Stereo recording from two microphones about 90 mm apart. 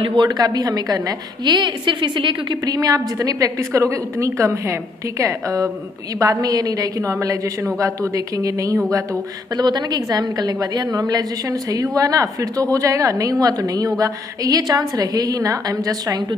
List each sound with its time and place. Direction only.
0.0 s a woman's voice: 70° right (ahead or behind)
0.3 s a woman's voice: 45° right (ahead or behind)
2.6 s a woman's voice: 45° right (ahead or behind)